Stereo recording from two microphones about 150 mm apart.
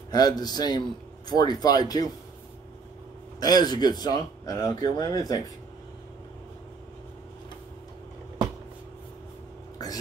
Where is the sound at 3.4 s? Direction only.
25° left (ahead or behind).